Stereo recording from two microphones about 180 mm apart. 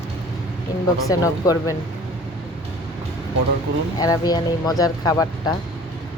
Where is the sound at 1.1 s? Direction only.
20° left (ahead or behind).